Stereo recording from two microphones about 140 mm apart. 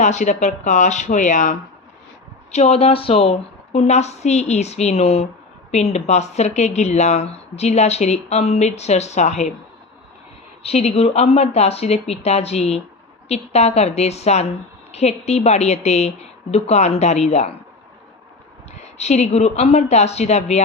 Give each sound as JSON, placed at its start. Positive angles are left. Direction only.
{"t": 0.0, "sound": "speech", "side_deg": 60}
{"t": 2.5, "sound": "speech", "side_deg": 50}
{"t": 10.6, "sound": "speech", "side_deg": 50}
{"t": 18.8, "sound": "speech", "side_deg": 50}